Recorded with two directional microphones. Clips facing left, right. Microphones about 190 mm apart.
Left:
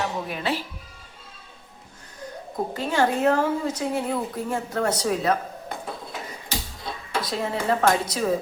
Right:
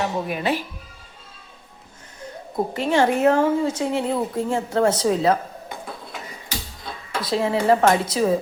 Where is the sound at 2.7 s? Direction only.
20° right (ahead or behind).